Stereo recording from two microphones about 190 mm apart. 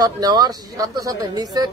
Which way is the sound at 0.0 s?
20° right (ahead or behind).